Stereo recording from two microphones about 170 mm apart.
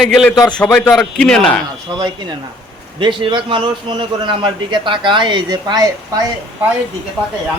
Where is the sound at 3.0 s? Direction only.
30° right (ahead or behind).